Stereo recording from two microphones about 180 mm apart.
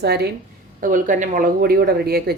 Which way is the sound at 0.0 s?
65° right (ahead or behind).